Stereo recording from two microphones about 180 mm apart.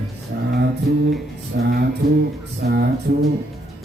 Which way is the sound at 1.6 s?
60° right (ahead or behind).